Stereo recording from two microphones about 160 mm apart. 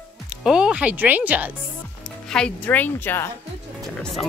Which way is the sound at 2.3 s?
10° left (ahead or behind).